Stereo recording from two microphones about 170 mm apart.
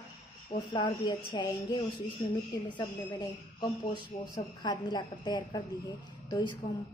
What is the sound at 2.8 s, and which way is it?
A woman's voice, 25° left (ahead or behind).